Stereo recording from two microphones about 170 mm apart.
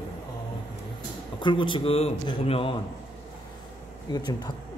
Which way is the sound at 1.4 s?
30° left (ahead or behind).